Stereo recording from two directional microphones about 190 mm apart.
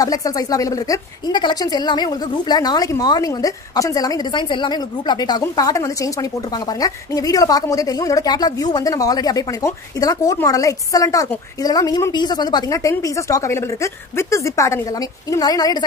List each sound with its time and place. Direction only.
0.0 s a woman's voice: 20° left (ahead or behind)